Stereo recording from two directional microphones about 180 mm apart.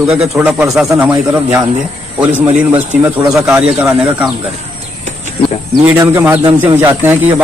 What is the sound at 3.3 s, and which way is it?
Speech, 5° right (ahead or behind).